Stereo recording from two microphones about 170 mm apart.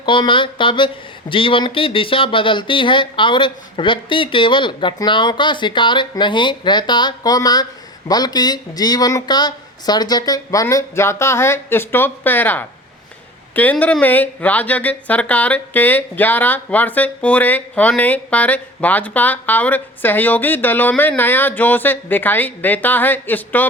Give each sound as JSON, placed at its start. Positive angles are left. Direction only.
{"t": 0.0, "sound": "speech", "side_deg": 30}